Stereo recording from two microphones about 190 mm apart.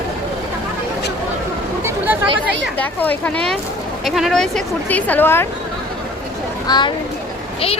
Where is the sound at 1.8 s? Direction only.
10° right (ahead or behind).